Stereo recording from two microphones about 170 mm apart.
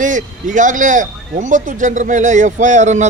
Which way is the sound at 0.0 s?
50° right (ahead or behind).